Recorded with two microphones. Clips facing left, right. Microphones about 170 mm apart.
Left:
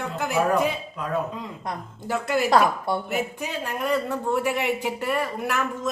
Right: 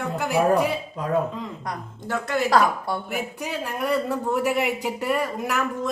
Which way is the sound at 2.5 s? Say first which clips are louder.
Even; 25° left (ahead or behind).